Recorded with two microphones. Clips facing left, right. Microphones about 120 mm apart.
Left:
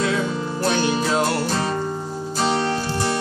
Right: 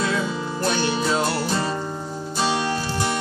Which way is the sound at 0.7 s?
10° left (ahead or behind).